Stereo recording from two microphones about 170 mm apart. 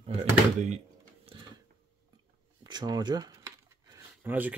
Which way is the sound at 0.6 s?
35° right (ahead or behind).